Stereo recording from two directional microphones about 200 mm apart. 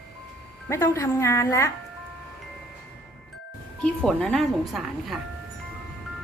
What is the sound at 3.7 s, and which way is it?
Speech, 5° left (ahead or behind).